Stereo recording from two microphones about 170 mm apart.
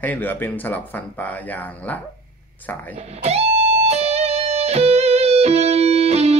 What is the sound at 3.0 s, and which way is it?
Speech, 35° right (ahead or behind).